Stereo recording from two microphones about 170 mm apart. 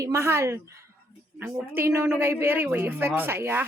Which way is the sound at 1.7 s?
15° right (ahead or behind).